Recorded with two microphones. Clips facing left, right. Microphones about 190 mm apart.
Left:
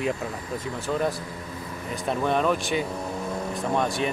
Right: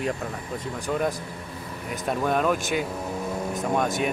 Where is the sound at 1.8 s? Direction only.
Centre (ahead or behind).